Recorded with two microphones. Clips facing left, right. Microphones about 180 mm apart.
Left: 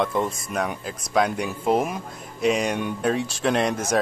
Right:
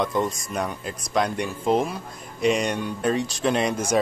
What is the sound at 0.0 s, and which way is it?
Speech, centre (ahead or behind).